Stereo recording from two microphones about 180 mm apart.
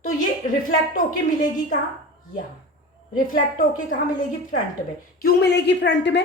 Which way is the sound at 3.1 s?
50° left (ahead or behind).